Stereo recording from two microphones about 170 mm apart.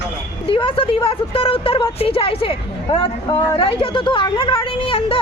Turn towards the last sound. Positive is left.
turn(degrees=35)  # may be behind; listen again after turning